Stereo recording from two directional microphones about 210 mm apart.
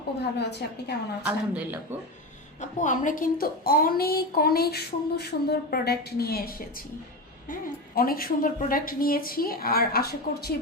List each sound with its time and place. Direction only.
0.2 s a woman's voice: 50° left (ahead or behind)
1.3 s speech: 10° right (ahead or behind)
2.6 s a woman's voice: 35° left (ahead or behind)
7.9 s a woman's voice: 45° left (ahead or behind)